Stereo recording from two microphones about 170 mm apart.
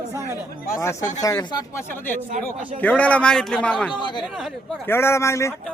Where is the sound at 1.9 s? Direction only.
10° left (ahead or behind).